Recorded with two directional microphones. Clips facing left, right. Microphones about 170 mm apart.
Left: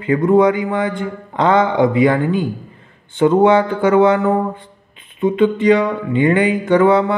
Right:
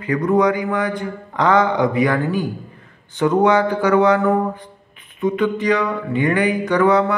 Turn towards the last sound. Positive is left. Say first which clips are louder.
# left 3 dB
turn(degrees=25)  # may be behind; listen again after turning